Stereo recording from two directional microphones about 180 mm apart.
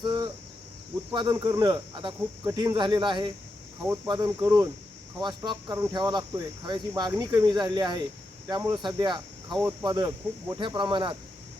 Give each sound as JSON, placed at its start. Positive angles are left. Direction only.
{"t": 0.0, "sound": "cricket", "side_deg": -25}
{"t": 1.1, "sound": "speech", "side_deg": -25}